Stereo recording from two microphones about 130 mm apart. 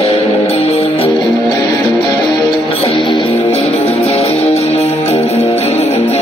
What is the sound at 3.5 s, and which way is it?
Music, 50° left (ahead or behind).